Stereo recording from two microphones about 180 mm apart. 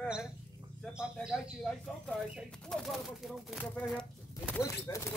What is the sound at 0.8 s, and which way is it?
Speech, 5° right (ahead or behind).